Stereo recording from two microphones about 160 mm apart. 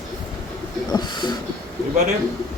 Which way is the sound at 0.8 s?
25° left (ahead or behind).